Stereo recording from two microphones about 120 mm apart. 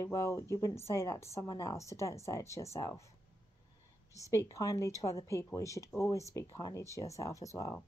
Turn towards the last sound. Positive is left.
turn(degrees=25)  # may be behind; listen again after turning